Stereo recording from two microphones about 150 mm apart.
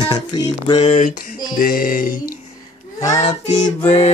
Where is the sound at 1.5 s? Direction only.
70° left (ahead or behind).